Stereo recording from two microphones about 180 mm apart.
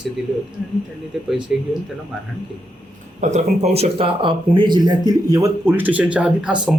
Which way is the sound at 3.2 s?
40° right (ahead or behind).